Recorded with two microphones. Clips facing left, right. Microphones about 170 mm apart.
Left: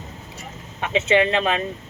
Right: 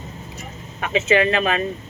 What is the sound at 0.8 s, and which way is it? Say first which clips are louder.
Speech: even; 25° left (ahead or behind).